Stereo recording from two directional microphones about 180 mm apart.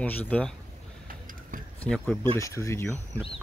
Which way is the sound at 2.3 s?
15° left (ahead or behind).